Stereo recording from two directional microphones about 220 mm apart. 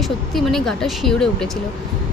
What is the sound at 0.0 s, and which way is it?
A woman's voice, centre (ahead or behind).